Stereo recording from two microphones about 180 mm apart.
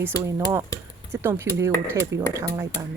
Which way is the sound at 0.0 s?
15° right (ahead or behind).